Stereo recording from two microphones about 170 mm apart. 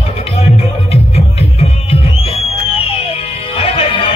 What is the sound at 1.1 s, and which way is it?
Music, 35° left (ahead or behind).